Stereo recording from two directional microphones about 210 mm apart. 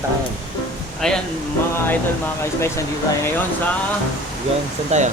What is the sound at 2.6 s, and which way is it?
Speech, 15° left (ahead or behind).